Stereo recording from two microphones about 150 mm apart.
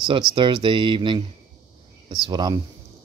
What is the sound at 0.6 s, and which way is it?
Speech, 30° right (ahead or behind).